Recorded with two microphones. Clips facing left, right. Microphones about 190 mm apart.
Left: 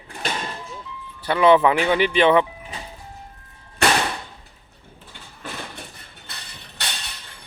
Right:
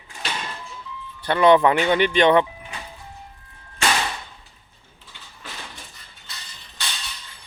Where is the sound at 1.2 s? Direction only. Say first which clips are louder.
Even; 5° left (ahead or behind).